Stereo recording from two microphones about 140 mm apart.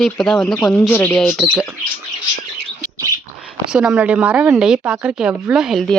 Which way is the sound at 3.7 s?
5° right (ahead or behind).